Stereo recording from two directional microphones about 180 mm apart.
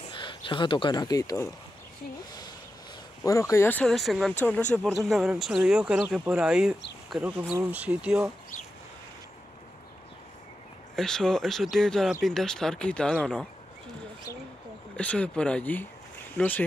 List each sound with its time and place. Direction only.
0.1 s speech: 25° left (ahead or behind)
3.3 s speech: 15° left (ahead or behind); by 8.3 s 5° right (ahead or behind)
11.0 s speech: 5° left (ahead or behind)
15.0 s speech: 5° left (ahead or behind)